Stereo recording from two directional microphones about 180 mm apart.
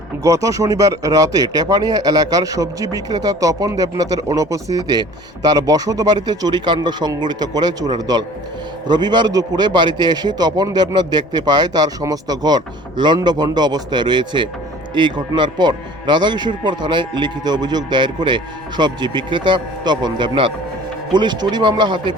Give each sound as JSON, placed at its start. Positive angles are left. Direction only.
{"t": 0.2, "sound": "speech", "side_deg": -20}